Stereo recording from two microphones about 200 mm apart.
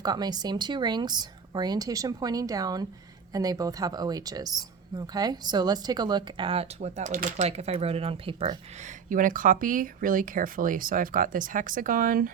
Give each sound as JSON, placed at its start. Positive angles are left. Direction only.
{"t": 0.0, "sound": "speech", "side_deg": -20}
{"t": 9.0, "sound": "speech", "side_deg": -40}